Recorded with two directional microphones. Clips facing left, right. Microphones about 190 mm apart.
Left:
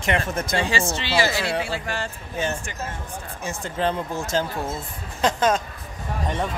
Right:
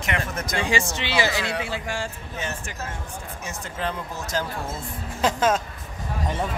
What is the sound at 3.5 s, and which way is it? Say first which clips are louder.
Speech: left 6 dB; 30° left (ahead or behind).